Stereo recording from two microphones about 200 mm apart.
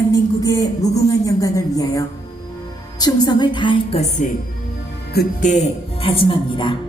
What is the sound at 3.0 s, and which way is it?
A woman's voice, 20° left (ahead or behind).